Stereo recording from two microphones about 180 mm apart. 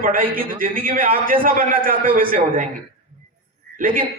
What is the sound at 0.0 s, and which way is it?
A man's voice, 50° right (ahead or behind).